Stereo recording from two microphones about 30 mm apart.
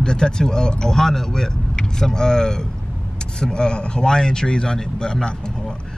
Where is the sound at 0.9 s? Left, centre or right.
Centre.